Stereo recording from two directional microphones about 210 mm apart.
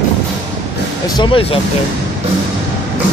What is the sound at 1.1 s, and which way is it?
Speech, 25° left (ahead or behind).